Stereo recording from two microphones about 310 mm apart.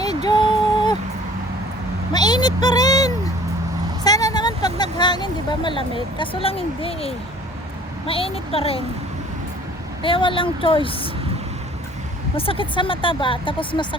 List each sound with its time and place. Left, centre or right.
0.3 s a sound: centre
2.1 s a sound: centre
4.0 s vehicle: centre
8.0 s speech: centre
10.0 s speech: centre
12.4 s speech: centre